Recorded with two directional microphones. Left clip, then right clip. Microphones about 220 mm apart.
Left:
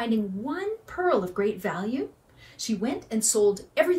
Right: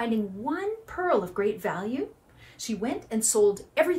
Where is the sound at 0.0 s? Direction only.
10° right (ahead or behind).